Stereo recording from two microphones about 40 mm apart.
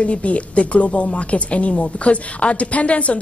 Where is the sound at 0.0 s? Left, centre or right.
Left.